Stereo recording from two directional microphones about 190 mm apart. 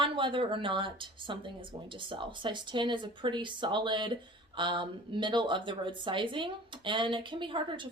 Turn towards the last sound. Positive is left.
turn(degrees=-25)  # may be behind; listen again after turning